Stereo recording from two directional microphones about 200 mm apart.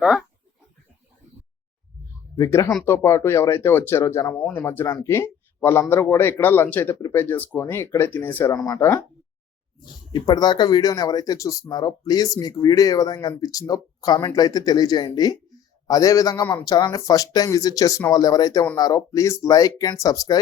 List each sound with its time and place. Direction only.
2.3 s speech: 15° left (ahead or behind)
10.1 s speech: 20° left (ahead or behind)